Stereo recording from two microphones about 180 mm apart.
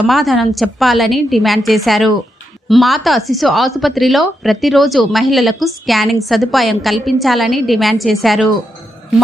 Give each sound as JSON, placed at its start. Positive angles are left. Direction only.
{"t": 0.1, "sound": "a woman's voice", "side_deg": 0}